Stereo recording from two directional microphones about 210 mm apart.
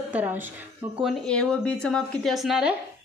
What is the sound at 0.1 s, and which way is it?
A woman's voice, 10° right (ahead or behind).